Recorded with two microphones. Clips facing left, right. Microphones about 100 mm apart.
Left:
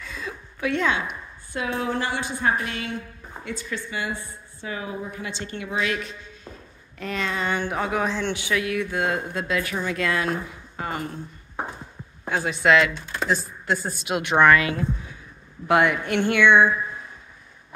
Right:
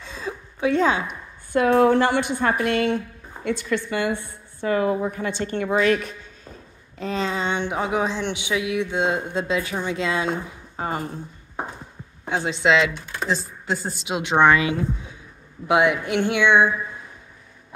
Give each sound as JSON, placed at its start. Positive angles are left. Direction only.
{"t": 0.0, "sound": "a sound", "side_deg": -30}
{"t": 1.5, "sound": "a woman's voice", "side_deg": -55}
{"t": 7.0, "sound": "speech", "side_deg": -30}
{"t": 12.3, "sound": "speech", "side_deg": -20}
{"t": 14.0, "sound": "speech", "side_deg": -20}